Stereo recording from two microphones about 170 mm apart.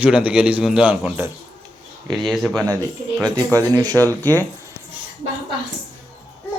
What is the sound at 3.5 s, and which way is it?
Speech, 20° right (ahead or behind).